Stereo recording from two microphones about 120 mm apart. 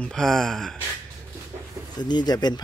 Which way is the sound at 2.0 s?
35° left (ahead or behind).